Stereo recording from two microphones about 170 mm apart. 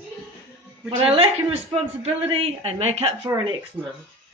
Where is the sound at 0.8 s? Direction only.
35° right (ahead or behind).